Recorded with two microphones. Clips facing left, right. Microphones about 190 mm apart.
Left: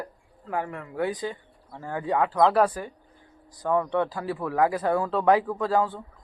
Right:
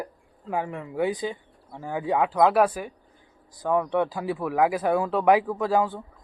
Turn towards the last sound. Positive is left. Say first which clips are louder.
# right 1 dB
turn(degrees=-15)  # may be behind; listen again after turning